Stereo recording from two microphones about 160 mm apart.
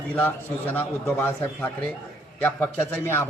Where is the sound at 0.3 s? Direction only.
10° left (ahead or behind).